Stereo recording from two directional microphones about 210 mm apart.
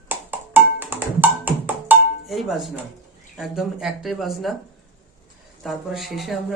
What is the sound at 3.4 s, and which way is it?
Speech, centre (ahead or behind).